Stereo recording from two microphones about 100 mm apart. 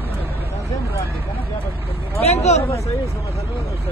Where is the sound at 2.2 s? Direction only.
90° left.